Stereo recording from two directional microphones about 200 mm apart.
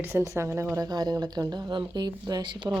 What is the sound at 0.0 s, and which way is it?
A woman's voice, 15° right (ahead or behind).